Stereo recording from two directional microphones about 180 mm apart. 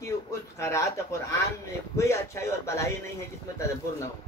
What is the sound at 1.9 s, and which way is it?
Speech, 15° left (ahead or behind).